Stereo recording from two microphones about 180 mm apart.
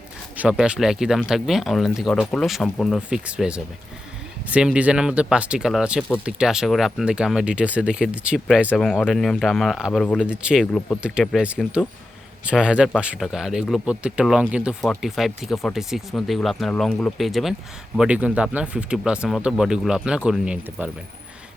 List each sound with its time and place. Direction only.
0.3 s speech: 5° right (ahead or behind)
10.7 s speech: 5° left (ahead or behind)